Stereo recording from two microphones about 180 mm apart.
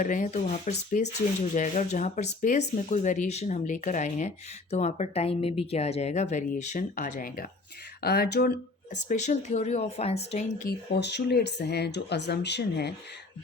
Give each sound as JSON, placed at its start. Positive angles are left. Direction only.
{"t": 0.0, "sound": "speech", "side_deg": 45}
{"t": 8.0, "sound": "speech", "side_deg": 60}
{"t": 8.9, "sound": "speech", "side_deg": 40}
{"t": 10.7, "sound": "speech", "side_deg": 65}